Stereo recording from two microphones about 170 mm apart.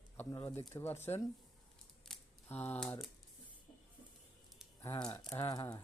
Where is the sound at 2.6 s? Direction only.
10° left (ahead or behind).